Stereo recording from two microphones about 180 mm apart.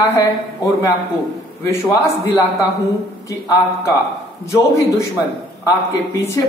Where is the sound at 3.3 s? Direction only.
15° left (ahead or behind).